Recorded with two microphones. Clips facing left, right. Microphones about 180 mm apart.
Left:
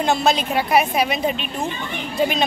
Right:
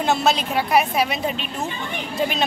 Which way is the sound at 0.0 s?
5° right (ahead or behind).